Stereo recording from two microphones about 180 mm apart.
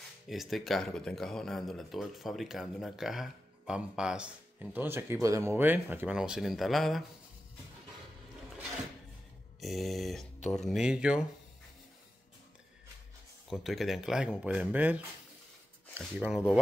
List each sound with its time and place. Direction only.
0.3 s speech: centre (ahead or behind)
9.6 s speech: centre (ahead or behind)
13.5 s speech: centre (ahead or behind)
16.0 s speech: 5° right (ahead or behind)